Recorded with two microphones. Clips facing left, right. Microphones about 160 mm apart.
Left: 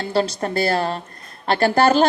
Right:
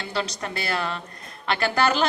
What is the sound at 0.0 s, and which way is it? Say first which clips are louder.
A woman's voice: left 8 dB; 40° left (ahead or behind).